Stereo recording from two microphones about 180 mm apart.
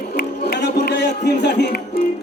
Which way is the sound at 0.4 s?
65° left (ahead or behind).